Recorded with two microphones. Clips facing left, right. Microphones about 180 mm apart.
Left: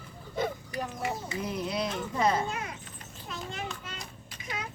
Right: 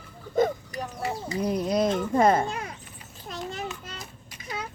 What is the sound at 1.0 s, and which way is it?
Speech, 40° right (ahead or behind).